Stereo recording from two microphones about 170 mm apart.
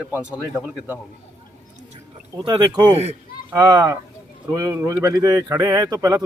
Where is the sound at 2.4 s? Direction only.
25° right (ahead or behind).